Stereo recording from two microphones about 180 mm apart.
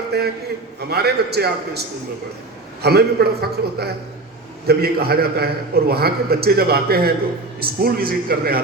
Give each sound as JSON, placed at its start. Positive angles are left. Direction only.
{"t": 0.1, "sound": "a man's voice", "side_deg": -65}
{"t": 2.8, "sound": "a man's voice", "side_deg": -60}